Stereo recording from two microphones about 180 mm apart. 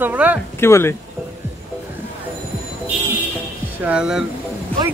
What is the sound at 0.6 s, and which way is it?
Speech, 15° left (ahead or behind).